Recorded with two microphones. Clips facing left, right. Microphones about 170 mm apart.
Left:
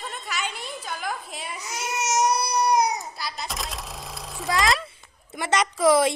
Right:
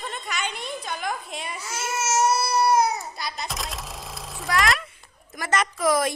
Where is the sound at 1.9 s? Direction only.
15° left (ahead or behind).